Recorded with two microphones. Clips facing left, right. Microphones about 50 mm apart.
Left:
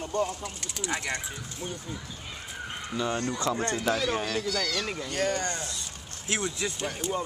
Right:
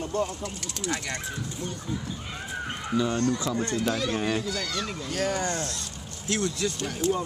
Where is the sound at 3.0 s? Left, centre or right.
Centre.